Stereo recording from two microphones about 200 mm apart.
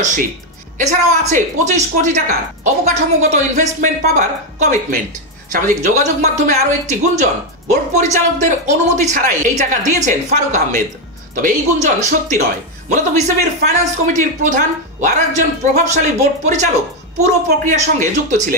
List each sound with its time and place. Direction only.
0.0 s a woman's voice: 40° right (ahead or behind)
13.6 s a woman's voice: 40° right (ahead or behind)